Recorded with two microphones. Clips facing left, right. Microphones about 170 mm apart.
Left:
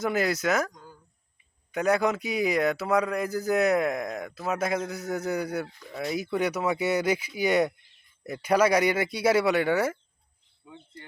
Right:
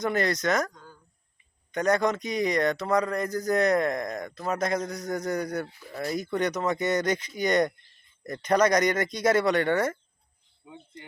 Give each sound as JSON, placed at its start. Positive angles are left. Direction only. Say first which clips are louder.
{"t": 0.0, "sound": "speech", "louder": "even", "side_deg": 5}
{"t": 5.6, "sound": "speech", "louder": "even", "side_deg": -5}
{"t": 10.6, "sound": "speech", "louder": "right 1 dB", "side_deg": -20}